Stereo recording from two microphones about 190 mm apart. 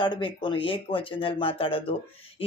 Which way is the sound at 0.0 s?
25° left (ahead or behind).